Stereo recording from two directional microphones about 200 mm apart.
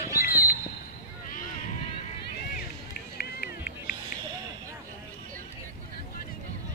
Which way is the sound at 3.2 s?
50° left (ahead or behind).